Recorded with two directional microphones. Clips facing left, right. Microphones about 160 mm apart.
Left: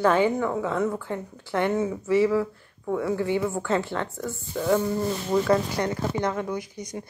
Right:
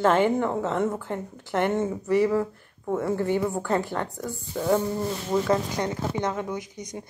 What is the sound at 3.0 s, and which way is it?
Speech, 45° right (ahead or behind).